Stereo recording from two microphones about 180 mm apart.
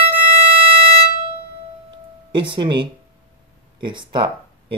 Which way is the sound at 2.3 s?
25° right (ahead or behind).